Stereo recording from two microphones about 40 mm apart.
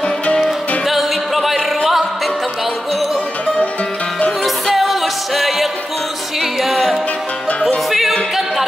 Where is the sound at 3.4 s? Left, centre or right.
Left.